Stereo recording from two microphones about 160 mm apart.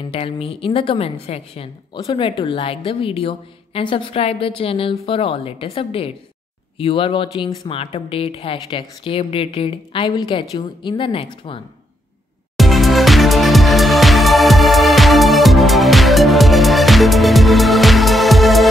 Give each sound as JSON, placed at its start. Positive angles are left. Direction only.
{"t": 0.1, "sound": "a woman's voice", "side_deg": 35}
{"t": 12.5, "sound": "music", "side_deg": 0}